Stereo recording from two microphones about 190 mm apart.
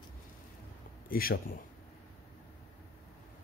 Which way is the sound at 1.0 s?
50° left (ahead or behind).